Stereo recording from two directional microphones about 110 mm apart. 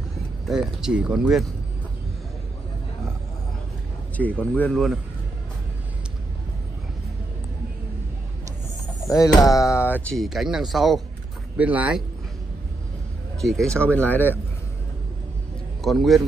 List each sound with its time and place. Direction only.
0.5 s speech: 5° right (ahead or behind)
4.2 s speech: 15° left (ahead or behind)
4.7 s speech: centre (ahead or behind)
9.0 s speech: 30° left (ahead or behind)
10.1 s speech: centre (ahead or behind)
11.5 s speech: 15° right (ahead or behind)
13.4 s speech: 5° left (ahead or behind)
15.8 s speech: centre (ahead or behind)